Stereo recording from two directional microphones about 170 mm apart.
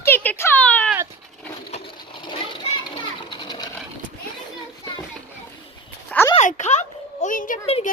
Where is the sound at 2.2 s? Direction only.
30° left (ahead or behind).